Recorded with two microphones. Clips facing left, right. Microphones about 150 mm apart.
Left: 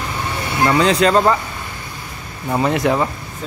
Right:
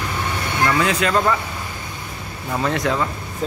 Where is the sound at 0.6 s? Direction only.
30° left (ahead or behind).